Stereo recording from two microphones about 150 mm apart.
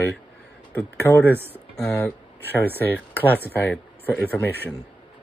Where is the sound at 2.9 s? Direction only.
10° left (ahead or behind).